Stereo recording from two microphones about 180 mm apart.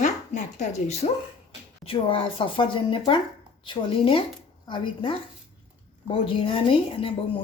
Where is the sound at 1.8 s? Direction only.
30° left (ahead or behind).